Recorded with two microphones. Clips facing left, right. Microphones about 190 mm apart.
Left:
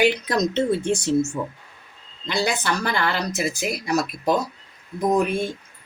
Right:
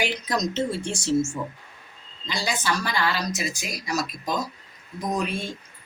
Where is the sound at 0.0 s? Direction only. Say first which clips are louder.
Left 6 dB; 60° left (ahead or behind).